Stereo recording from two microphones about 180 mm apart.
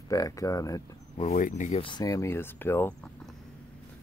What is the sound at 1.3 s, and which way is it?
Speech, 45° left (ahead or behind).